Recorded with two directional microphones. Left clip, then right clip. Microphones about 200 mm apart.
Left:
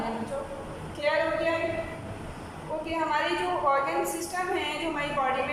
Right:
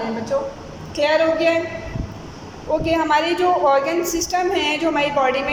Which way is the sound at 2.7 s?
50° right (ahead or behind).